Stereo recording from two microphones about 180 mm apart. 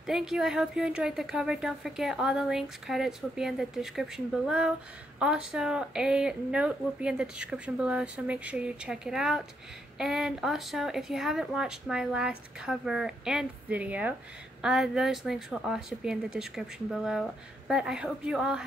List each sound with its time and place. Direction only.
0.0 s a woman's voice: centre (ahead or behind)